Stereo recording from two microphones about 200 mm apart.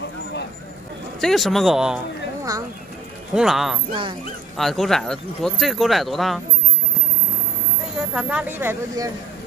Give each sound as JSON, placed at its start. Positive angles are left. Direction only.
{"t": 1.2, "sound": "speech", "side_deg": 0}
{"t": 3.3, "sound": "speech", "side_deg": 0}
{"t": 3.9, "sound": "speech", "side_deg": -25}
{"t": 4.6, "sound": "speech", "side_deg": 0}
{"t": 8.1, "sound": "speech", "side_deg": -5}